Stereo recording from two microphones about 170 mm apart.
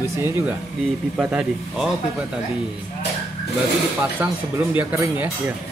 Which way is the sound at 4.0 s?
10° right (ahead or behind).